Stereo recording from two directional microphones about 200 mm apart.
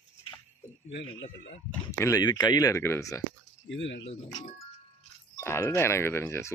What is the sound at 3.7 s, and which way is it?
Speech, 65° left (ahead or behind).